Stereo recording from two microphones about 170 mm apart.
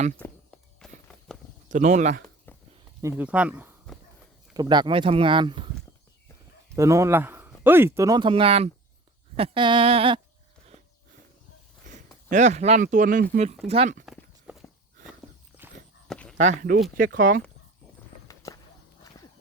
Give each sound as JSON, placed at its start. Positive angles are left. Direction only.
{"t": 0.2, "sound": "walk", "side_deg": 5}
{"t": 1.7, "sound": "speech", "side_deg": -45}
{"t": 2.5, "sound": "a sound", "side_deg": 10}
{"t": 3.0, "sound": "speech", "side_deg": -15}
{"t": 4.5, "sound": "speech", "side_deg": -25}
{"t": 6.7, "sound": "speech", "side_deg": -15}
{"t": 11.9, "sound": "speech", "side_deg": -45}
{"t": 13.7, "sound": "speech", "side_deg": -35}
{"t": 14.0, "sound": "clip-clop", "side_deg": -5}
{"t": 15.6, "sound": "walk", "side_deg": -10}
{"t": 16.0, "sound": "a sound", "side_deg": 5}
{"t": 16.4, "sound": "speech", "side_deg": -45}
{"t": 18.3, "sound": "walk", "side_deg": 20}